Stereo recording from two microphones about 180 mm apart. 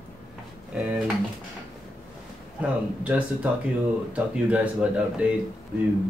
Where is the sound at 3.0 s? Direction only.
10° right (ahead or behind).